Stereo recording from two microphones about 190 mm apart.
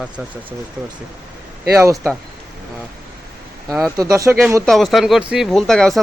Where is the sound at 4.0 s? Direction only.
15° right (ahead or behind).